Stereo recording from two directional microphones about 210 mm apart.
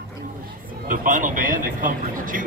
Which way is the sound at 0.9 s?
40° right (ahead or behind).